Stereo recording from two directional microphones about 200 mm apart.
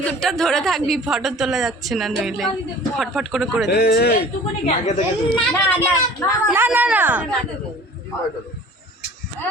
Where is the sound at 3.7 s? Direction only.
55° left (ahead or behind).